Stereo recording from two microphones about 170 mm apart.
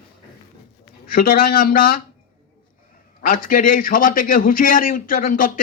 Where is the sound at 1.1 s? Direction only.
60° left (ahead or behind).